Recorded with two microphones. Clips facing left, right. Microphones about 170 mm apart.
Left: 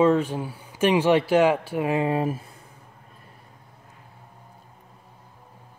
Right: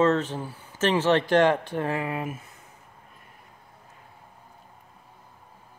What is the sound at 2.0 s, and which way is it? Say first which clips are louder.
Speech: left 7 dB; 30° left (ahead or behind).